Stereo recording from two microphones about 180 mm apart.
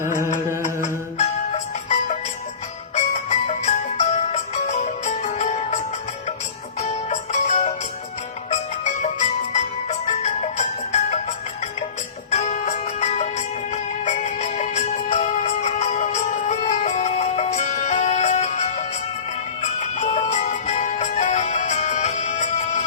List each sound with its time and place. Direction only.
0.8 s music: 40° left (ahead or behind)